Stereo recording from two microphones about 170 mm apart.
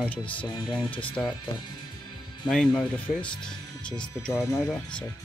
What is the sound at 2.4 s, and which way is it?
Speech, 5° left (ahead or behind).